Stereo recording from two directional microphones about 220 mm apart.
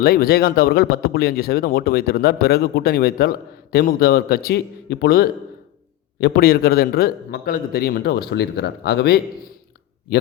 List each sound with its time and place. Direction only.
0.0 s speech: 45° left (ahead or behind)